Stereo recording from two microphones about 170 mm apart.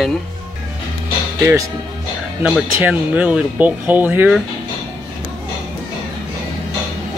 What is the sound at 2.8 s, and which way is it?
Speech, 10° right (ahead or behind).